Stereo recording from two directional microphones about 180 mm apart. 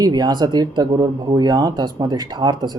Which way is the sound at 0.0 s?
20° right (ahead or behind).